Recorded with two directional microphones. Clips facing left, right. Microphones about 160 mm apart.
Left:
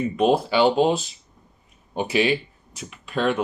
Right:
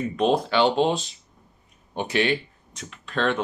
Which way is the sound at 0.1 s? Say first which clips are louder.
Left 1 dB; 5° left (ahead or behind).